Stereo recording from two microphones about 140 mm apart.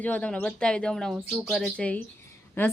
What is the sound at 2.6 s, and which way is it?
Speech, 15° left (ahead or behind).